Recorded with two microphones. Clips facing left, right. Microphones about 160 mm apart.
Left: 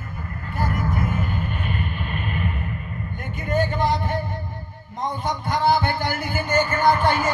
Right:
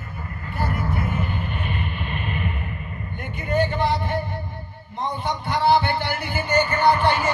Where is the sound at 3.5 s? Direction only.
45° left (ahead or behind).